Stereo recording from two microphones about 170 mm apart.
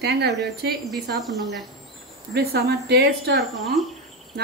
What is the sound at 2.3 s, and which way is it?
Speech, 70° right (ahead or behind).